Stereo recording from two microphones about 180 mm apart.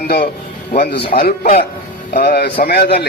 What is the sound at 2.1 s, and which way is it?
Speech, 60° left (ahead or behind).